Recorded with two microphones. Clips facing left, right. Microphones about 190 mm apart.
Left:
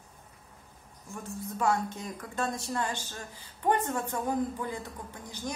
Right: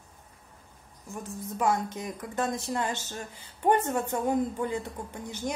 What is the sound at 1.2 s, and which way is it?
Speech, 20° right (ahead or behind).